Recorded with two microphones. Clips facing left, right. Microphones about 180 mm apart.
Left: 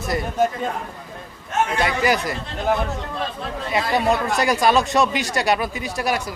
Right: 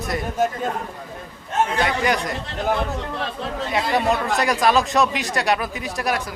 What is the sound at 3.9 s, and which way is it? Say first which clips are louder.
Speech: left 1 dB; centre (ahead or behind).